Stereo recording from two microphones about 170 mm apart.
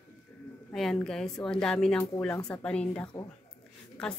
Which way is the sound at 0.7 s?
Centre (ahead or behind).